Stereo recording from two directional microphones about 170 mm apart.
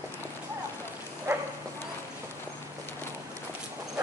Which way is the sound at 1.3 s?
15° right (ahead or behind).